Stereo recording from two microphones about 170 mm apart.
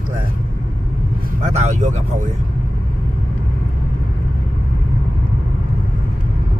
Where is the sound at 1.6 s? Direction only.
45° right (ahead or behind).